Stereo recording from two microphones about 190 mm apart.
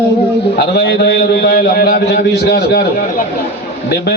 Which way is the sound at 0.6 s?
60° left (ahead or behind).